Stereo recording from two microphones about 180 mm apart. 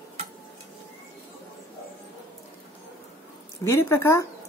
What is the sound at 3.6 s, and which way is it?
Speech, 15° left (ahead or behind).